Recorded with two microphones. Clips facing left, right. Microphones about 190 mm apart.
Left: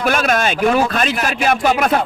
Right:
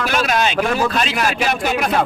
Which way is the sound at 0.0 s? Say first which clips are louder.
Left 2 dB; 50° left (ahead or behind).